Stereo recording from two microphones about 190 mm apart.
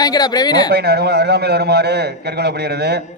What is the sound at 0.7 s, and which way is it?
A man's voice, 60° right (ahead or behind).